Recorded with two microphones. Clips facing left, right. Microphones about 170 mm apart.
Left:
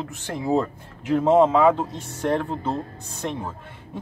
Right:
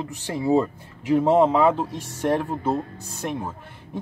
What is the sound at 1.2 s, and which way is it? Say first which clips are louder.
Speech: left 1 dB; 15° right (ahead or behind).